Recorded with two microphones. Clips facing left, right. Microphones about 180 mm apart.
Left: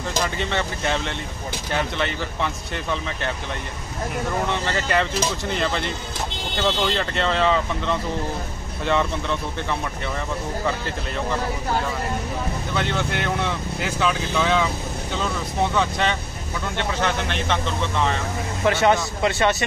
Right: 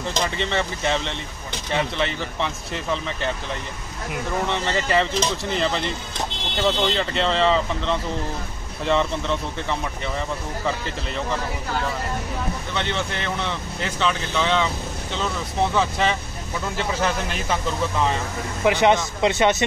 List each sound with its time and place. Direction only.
0.4 s speech: centre (ahead or behind)
4.5 s speech: centre (ahead or behind)
12.7 s speech: 5° left (ahead or behind)
15.7 s speech: centre (ahead or behind)
18.7 s speech: 15° right (ahead or behind)